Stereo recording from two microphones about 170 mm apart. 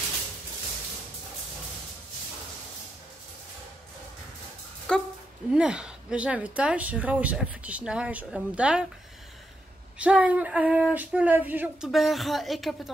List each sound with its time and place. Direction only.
4.9 s dog: 5° left (ahead or behind)
5.5 s speech: 5° right (ahead or behind)
9.9 s speech: 5° right (ahead or behind)